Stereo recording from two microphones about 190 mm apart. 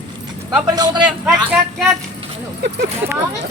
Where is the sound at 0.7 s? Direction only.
20° right (ahead or behind).